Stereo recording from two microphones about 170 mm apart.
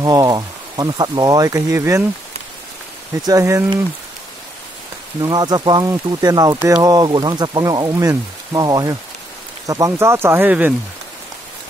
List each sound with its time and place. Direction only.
0.0 s speech: 20° right (ahead or behind)
3.3 s speech: 20° right (ahead or behind)
5.2 s speech: 25° right (ahead or behind)